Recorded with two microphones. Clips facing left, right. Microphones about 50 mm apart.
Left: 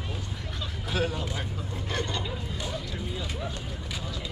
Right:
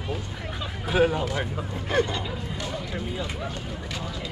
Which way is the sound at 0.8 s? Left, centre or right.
Right.